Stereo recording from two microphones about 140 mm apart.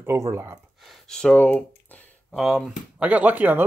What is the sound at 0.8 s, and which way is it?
Speech, 5° left (ahead or behind).